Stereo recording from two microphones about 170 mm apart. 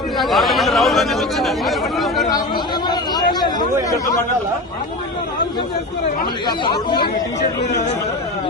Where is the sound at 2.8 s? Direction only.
25° left (ahead or behind).